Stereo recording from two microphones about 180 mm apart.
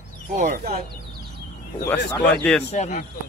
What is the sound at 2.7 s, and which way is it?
Speech, 40° left (ahead or behind).